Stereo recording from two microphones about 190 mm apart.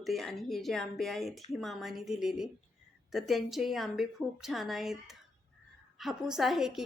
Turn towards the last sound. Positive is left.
turn(degrees=0)  # may be behind; listen again after turning